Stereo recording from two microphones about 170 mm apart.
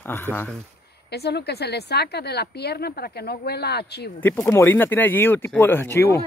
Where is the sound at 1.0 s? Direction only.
75° left (ahead or behind).